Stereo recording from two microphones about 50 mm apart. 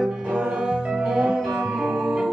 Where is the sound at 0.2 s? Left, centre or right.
Centre.